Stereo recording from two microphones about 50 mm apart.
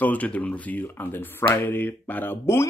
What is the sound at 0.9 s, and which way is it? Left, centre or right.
Speech, left.